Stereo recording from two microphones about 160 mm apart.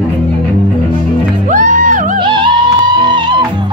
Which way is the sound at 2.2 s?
30° right (ahead or behind).